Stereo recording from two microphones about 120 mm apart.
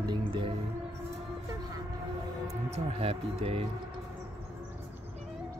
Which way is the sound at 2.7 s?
60° right (ahead or behind).